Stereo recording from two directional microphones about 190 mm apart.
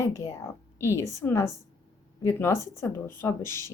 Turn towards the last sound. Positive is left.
turn(degrees=15)  # may be behind; listen again after turning